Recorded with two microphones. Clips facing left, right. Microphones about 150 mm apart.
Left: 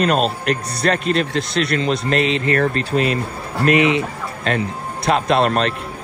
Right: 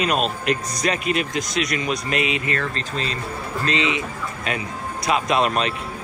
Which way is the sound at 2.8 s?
30° right (ahead or behind).